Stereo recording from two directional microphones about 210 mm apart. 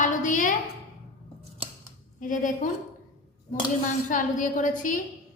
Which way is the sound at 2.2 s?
40° left (ahead or behind).